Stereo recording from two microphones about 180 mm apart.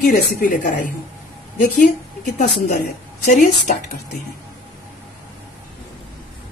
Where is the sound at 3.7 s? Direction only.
45° left (ahead or behind).